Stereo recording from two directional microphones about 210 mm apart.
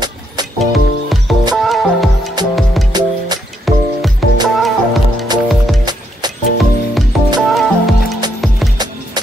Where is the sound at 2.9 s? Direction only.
20° right (ahead or behind).